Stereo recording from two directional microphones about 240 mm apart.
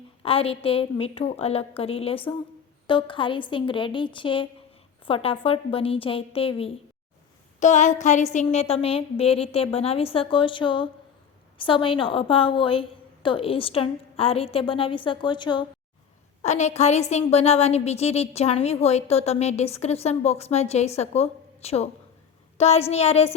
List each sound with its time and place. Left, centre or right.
0.2 s a woman's voice: left